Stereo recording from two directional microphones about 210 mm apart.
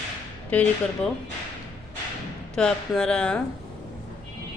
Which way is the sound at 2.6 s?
5° left (ahead or behind).